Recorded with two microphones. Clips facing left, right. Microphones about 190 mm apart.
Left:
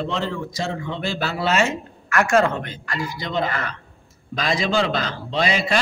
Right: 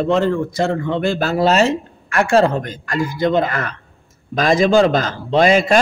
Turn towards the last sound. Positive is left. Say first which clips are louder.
# right 8 dB
turn(degrees=-50)  # may be behind; listen again after turning